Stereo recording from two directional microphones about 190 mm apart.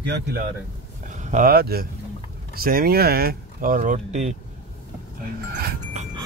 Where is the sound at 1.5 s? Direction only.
55° right (ahead or behind); by 4.3 s 40° right (ahead or behind).